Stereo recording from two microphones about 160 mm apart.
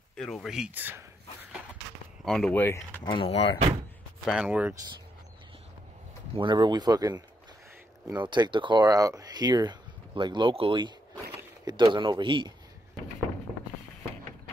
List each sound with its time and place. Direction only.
0.1 s speech: 5° left (ahead or behind)
2.2 s speech: 5° left (ahead or behind)
3.1 s speech: 35° left (ahead or behind)
4.3 s speech: 5° right (ahead or behind)
6.3 s speech: 30° right (ahead or behind)